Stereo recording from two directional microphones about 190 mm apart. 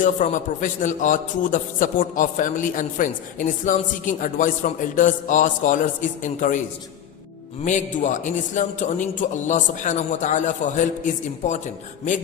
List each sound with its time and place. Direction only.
0.0 s a man's voice: 40° left (ahead or behind)
7.6 s a man's voice: 40° left (ahead or behind)